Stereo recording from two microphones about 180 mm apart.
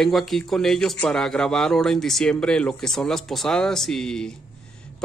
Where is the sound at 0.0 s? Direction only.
Centre (ahead or behind).